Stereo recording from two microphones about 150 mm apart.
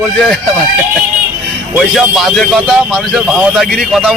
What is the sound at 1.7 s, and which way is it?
Speech, 5° right (ahead or behind).